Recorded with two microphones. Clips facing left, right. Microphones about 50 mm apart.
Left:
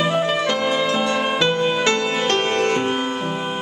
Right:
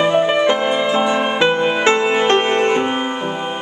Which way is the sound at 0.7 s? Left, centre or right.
Centre.